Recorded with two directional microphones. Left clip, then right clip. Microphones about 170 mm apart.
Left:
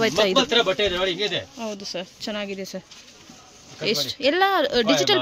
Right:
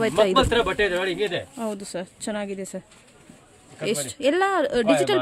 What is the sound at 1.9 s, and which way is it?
Speech, 20° right (ahead or behind).